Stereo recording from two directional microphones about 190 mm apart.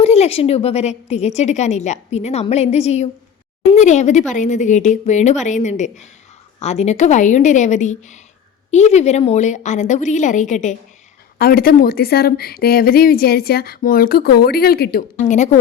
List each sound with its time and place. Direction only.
0.0 s a woman's voice: 35° left (ahead or behind)
11.3 s speech: 50° left (ahead or behind)
15.2 s a woman's voice: 40° left (ahead or behind)